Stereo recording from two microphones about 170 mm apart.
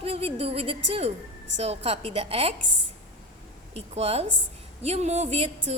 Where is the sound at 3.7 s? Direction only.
35° right (ahead or behind).